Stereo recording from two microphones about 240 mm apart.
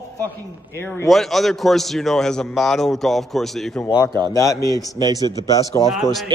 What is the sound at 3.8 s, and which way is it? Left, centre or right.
A man's voice, centre.